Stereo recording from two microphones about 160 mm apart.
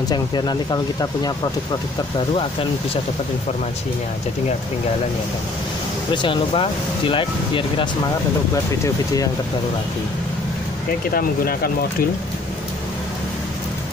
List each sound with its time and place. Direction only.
0.1 s speech: 25° left (ahead or behind)
6.1 s speech: 30° left (ahead or behind)
8.8 s speech: 20° left (ahead or behind)
11.1 s speech: 65° left (ahead or behind)